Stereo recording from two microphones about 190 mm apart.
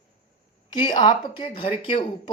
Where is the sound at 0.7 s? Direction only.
25° left (ahead or behind).